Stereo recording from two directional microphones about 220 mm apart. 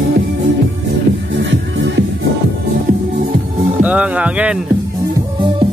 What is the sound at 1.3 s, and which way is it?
Music, 55° right (ahead or behind).